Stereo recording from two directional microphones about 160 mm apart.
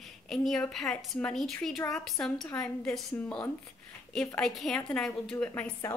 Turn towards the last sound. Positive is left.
turn(degrees=15)  # may be behind; listen again after turning